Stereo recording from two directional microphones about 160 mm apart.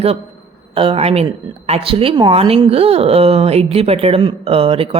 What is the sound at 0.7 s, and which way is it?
Speech, 35° right (ahead or behind).